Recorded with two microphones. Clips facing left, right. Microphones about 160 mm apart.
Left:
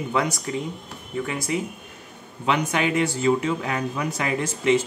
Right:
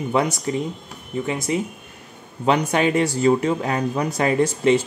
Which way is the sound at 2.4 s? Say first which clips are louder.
Right 4 dB; 35° right (ahead or behind).